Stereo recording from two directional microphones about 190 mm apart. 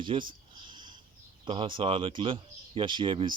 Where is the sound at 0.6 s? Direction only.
25° right (ahead or behind).